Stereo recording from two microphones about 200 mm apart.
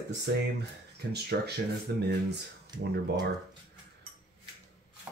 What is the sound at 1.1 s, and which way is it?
Speech, 55° right (ahead or behind).